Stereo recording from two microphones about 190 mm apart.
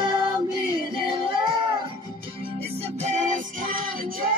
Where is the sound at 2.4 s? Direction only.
30° right (ahead or behind); by 4.3 s 50° right (ahead or behind).